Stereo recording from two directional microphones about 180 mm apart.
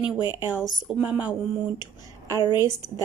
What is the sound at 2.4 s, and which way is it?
Speech, 25° left (ahead or behind).